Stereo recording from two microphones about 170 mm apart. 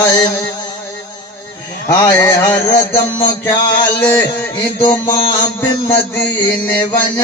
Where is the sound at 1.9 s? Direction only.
20° left (ahead or behind).